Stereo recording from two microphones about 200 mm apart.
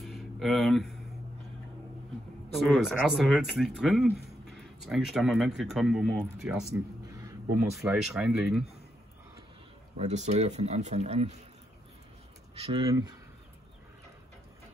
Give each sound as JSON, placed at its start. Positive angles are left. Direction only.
{"t": 0.0, "sound": "a sound", "side_deg": 0}
{"t": 2.5, "sound": "speech", "side_deg": 0}
{"t": 6.7, "sound": "a sound", "side_deg": -15}
{"t": 7.8, "sound": "speech", "side_deg": -5}
{"t": 9.9, "sound": "speech", "side_deg": -35}
{"t": 12.5, "sound": "speech", "side_deg": -30}
{"t": 12.8, "sound": "speech", "side_deg": -20}